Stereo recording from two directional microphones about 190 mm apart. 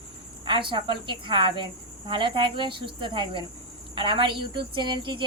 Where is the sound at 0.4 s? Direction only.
25° right (ahead or behind).